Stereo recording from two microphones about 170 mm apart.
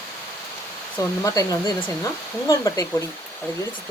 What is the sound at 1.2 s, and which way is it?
Speech, 20° left (ahead or behind).